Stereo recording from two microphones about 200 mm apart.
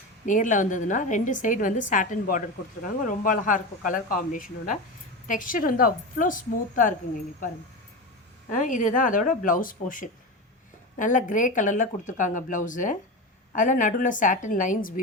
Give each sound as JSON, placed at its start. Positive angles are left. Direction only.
{"t": 0.3, "sound": "a woman's voice", "side_deg": 40}
{"t": 8.4, "sound": "speech", "side_deg": 40}